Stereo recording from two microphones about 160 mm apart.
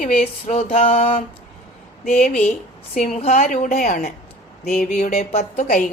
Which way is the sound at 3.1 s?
40° left (ahead or behind).